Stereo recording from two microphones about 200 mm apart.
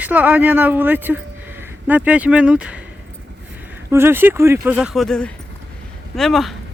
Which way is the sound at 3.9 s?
10° right (ahead or behind).